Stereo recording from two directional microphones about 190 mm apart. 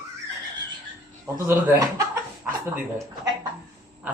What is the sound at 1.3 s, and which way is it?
Speech, 15° right (ahead or behind).